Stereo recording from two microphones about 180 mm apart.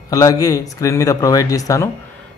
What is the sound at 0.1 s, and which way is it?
Speech, 20° left (ahead or behind).